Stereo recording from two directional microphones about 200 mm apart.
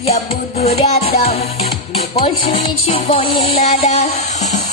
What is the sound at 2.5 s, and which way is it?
Music, 30° left (ahead or behind).